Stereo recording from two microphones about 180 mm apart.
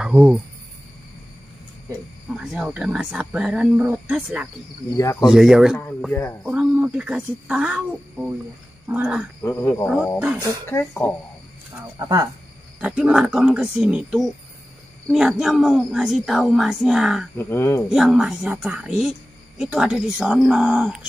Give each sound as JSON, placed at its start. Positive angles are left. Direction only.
{"t": 0.0, "sound": "speech", "side_deg": -5}
{"t": 2.3, "sound": "speech", "side_deg": -5}
{"t": 4.9, "sound": "speech", "side_deg": 15}
{"t": 5.3, "sound": "speech", "side_deg": -5}
{"t": 6.4, "sound": "speech", "side_deg": -5}
{"t": 9.4, "sound": "speech", "side_deg": 15}
{"t": 10.1, "sound": "speech", "side_deg": -5}
{"t": 10.6, "sound": "speech", "side_deg": 15}
{"t": 12.0, "sound": "speech", "side_deg": -20}
{"t": 12.8, "sound": "speech", "side_deg": -5}
{"t": 17.4, "sound": "speech", "side_deg": 15}
{"t": 17.8, "sound": "speech", "side_deg": -5}